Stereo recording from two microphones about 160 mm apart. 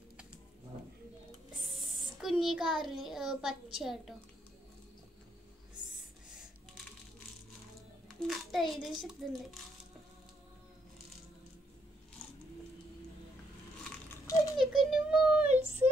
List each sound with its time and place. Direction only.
1.8 s a child's voice: centre (ahead or behind)
8.3 s a child's voice: centre (ahead or behind)
14.1 s rattle: 20° left (ahead or behind)
14.6 s a sound: centre (ahead or behind)